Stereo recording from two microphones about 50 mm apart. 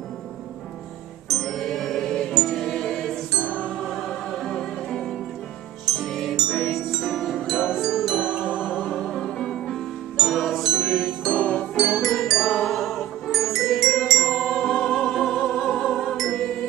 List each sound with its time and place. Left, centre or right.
1.4 s music: centre
3.3 s music: left
4.1 s music: centre
6.3 s music: centre
7.1 s music: centre
7.4 s music: centre
8.3 s music: centre
9.1 s music: centre
10.1 s music: centre
11.3 s music: left
11.7 s music: centre